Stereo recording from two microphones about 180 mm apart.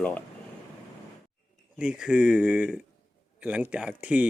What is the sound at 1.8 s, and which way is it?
Speech, 5° right (ahead or behind).